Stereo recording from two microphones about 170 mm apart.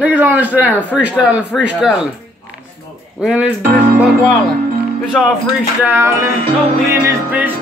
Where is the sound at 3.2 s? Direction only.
5° right (ahead or behind).